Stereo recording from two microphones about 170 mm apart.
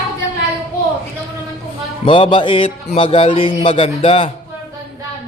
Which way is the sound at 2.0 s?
30° left (ahead or behind).